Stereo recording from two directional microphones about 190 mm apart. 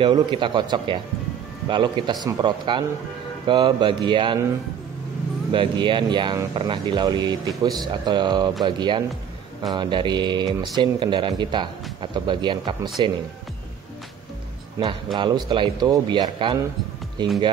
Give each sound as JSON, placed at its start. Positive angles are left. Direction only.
{"t": 0.0, "sound": "speech", "side_deg": -25}
{"t": 5.5, "sound": "speech", "side_deg": -25}
{"t": 15.1, "sound": "speech", "side_deg": -25}